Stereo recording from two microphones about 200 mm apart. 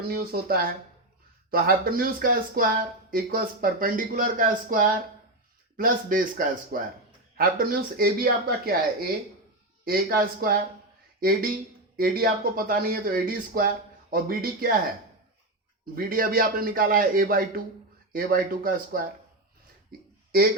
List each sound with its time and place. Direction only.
0.1 s speech: 50° right (ahead or behind)
16.0 s speech: 45° right (ahead or behind)
19.9 s a sound: 45° right (ahead or behind)